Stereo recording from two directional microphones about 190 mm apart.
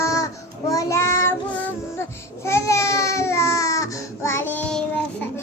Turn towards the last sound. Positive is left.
turn(degrees=5)  # may be behind; listen again after turning